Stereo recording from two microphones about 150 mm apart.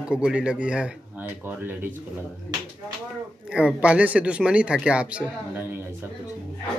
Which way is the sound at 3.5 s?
5° right (ahead or behind).